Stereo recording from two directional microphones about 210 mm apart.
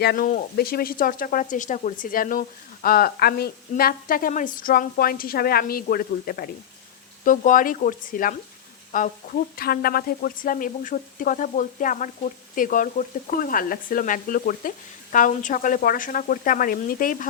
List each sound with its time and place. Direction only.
0.0 s a woman's voice: 45° left (ahead or behind)